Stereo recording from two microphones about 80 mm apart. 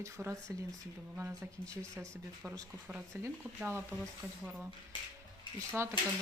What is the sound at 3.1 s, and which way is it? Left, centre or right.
A woman's voice, right.